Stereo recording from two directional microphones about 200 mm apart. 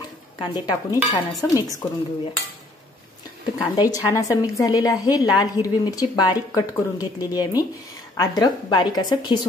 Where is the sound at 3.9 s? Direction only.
15° left (ahead or behind).